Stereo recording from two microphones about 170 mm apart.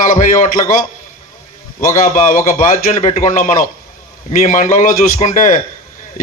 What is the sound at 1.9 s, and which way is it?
A man's voice, 50° left (ahead or behind).